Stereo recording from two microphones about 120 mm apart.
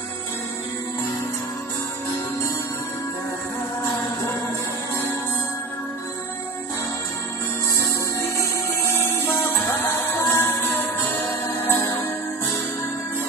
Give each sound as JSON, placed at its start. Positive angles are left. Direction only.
{"t": 7.7, "sound": "music", "side_deg": 25}